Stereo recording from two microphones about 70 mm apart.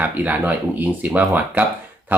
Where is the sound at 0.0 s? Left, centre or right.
Right.